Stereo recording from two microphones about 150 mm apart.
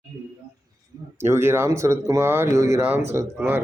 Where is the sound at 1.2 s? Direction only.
15° right (ahead or behind).